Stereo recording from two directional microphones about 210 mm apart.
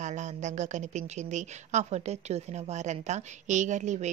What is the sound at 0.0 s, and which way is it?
A woman's voice, 35° right (ahead or behind).